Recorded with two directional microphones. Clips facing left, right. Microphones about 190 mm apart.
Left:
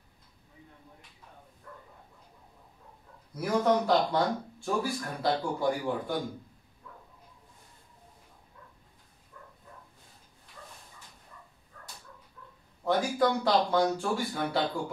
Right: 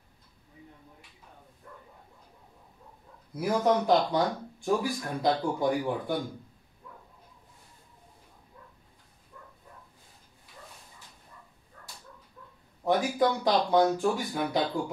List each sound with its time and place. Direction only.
3.3 s speech: 15° right (ahead or behind)
12.8 s speech: 15° right (ahead or behind)